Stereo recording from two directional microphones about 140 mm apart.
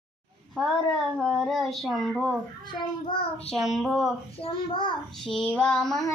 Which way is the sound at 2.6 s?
35° left (ahead or behind).